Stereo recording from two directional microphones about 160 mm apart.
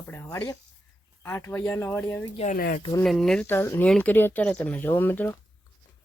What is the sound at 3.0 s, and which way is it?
Speech, centre (ahead or behind).